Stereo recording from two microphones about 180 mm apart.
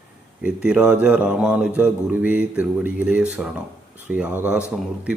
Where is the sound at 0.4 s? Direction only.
5° right (ahead or behind).